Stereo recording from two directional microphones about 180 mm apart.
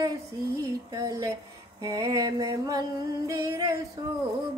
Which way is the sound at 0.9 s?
20° right (ahead or behind).